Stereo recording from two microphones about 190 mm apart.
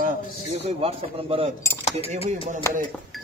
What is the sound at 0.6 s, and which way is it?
Speech, 30° right (ahead or behind).